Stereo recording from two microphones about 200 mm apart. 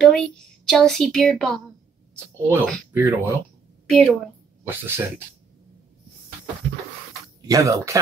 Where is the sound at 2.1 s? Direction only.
10° right (ahead or behind).